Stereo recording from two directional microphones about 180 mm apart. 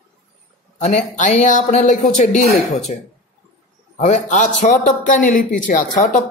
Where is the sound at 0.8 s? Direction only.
40° left (ahead or behind).